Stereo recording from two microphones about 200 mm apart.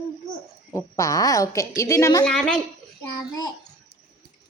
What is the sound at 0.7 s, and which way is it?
A woman's voice, 15° left (ahead or behind).